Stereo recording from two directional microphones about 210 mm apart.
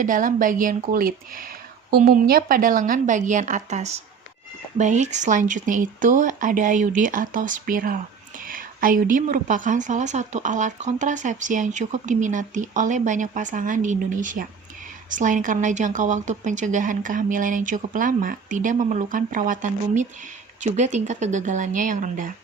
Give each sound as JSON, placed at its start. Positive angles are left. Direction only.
{"t": 0.0, "sound": "a woman's voice", "side_deg": -40}